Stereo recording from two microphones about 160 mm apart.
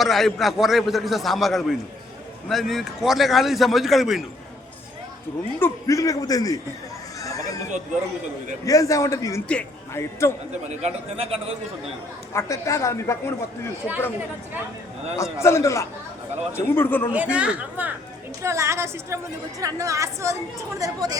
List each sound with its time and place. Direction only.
0.0 s a man's voice: centre (ahead or behind)
5.5 s a man's voice: 15° left (ahead or behind)
7.2 s a sound: 20° left (ahead or behind)
8.6 s a man's voice: 20° left (ahead or behind)
10.8 s a man's voice: 35° right (ahead or behind)
12.3 s a woman's voice: 20° left (ahead or behind)
15.1 s a man's voice: 20° left (ahead or behind)
17.3 s a woman's voice: 5° right (ahead or behind)